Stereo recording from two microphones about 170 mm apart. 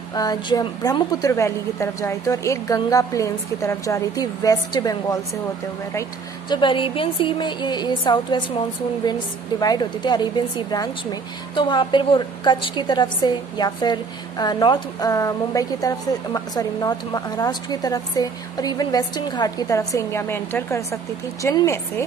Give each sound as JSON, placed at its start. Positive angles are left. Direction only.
{"t": 0.1, "sound": "speech", "side_deg": 25}
{"t": 6.5, "sound": "speech", "side_deg": 30}
{"t": 9.6, "sound": "speech", "side_deg": 25}